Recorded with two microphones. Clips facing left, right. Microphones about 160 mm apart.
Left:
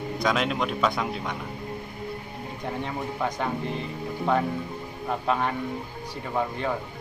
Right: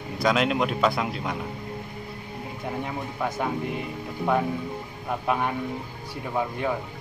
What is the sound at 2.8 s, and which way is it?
Speech, 5° right (ahead or behind).